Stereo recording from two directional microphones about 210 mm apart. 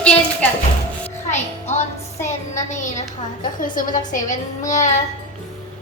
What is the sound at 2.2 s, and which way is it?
Child singing, 35° left (ahead or behind).